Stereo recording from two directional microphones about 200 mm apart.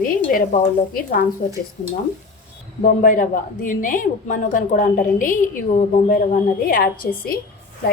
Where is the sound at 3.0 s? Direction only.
45° left (ahead or behind).